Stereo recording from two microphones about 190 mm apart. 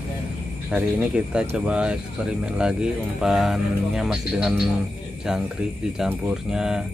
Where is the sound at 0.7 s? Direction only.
5° right (ahead or behind).